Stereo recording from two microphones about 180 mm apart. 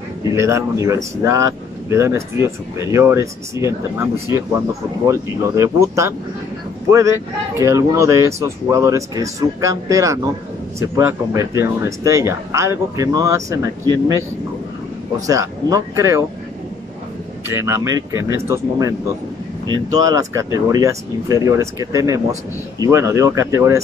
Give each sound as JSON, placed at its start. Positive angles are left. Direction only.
{"t": 0.4, "sound": "speech", "side_deg": -15}
{"t": 7.5, "sound": "speech", "side_deg": -15}
{"t": 15.1, "sound": "speech", "side_deg": -20}
{"t": 17.5, "sound": "speech", "side_deg": -15}